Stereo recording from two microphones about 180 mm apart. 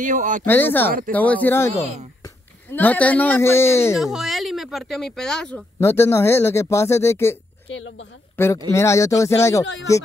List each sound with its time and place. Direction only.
0.0 s speech: 45° right (ahead or behind)
0.5 s speech: 10° left (ahead or behind)
3.9 s speech: centre (ahead or behind)
5.8 s speech: 15° left (ahead or behind)
7.7 s speech: 90° left
8.4 s speech: 10° left (ahead or behind)